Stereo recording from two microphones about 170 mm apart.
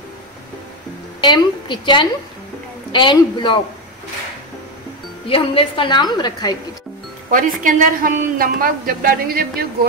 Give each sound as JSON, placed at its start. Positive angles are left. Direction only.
{"t": 1.2, "sound": "a woman's voice", "side_deg": 25}
{"t": 5.3, "sound": "a woman's voice", "side_deg": 30}
{"t": 7.2, "sound": "a woman's voice", "side_deg": -55}